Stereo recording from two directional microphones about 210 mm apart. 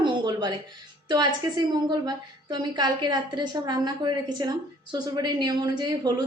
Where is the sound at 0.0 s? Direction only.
20° right (ahead or behind).